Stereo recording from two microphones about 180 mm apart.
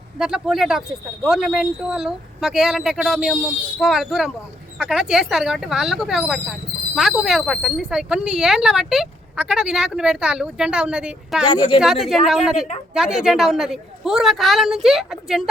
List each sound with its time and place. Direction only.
0.2 s speech: 5° right (ahead or behind)
11.4 s a woman's voice: 25° left (ahead or behind)
11.8 s speech: centre (ahead or behind)